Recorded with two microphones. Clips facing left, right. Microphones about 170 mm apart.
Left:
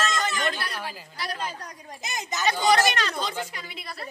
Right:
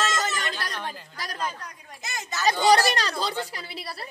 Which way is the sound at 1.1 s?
40° right (ahead or behind).